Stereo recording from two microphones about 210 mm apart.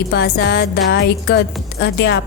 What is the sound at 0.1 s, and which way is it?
Speech, 50° left (ahead or behind).